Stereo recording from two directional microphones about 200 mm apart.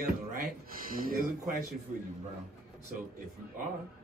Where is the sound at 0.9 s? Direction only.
45° right (ahead or behind).